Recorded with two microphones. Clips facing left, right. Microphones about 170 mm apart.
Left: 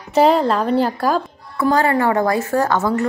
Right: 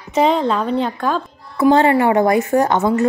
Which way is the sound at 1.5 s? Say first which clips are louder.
Right 4 dB; 20° right (ahead or behind).